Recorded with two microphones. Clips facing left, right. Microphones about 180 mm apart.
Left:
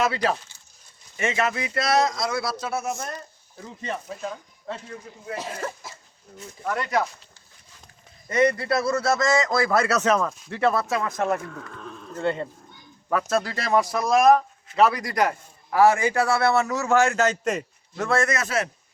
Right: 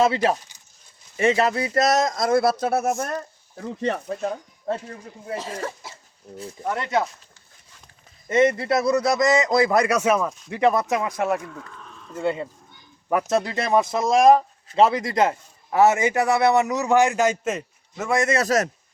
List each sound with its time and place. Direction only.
0.0 s speech: 25° right (ahead or behind)
1.1 s speech: 35° right (ahead or behind); by 4.0 s 65° right (ahead or behind)
4.2 s speech: 45° right (ahead or behind)
6.3 s speech: 30° right (ahead or behind)
8.3 s speech: 25° right (ahead or behind)
13.1 s speech: 20° right (ahead or behind)
17.4 s a man's voice: centre (ahead or behind)
18.3 s a man's voice: 35° right (ahead or behind)